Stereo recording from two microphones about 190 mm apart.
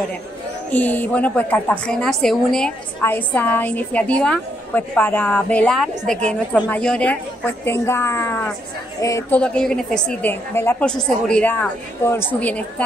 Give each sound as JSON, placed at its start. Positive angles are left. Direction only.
{"t": 0.7, "sound": "a woman's voice", "side_deg": 10}
{"t": 9.4, "sound": "a woman's voice", "side_deg": 5}